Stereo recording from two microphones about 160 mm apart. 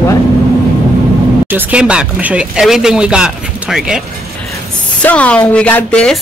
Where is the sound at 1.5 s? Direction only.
10° right (ahead or behind).